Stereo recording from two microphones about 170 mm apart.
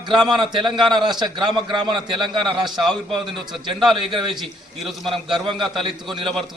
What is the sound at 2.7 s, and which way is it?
Speech, centre (ahead or behind).